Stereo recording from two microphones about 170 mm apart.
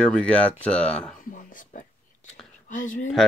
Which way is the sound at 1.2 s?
50° left (ahead or behind).